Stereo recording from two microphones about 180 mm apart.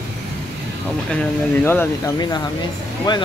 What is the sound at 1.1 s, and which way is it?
Speech, 10° left (ahead or behind).